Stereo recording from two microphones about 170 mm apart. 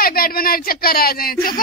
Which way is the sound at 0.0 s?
60° left (ahead or behind).